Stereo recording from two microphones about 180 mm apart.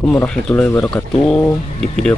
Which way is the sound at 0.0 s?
10° left (ahead or behind).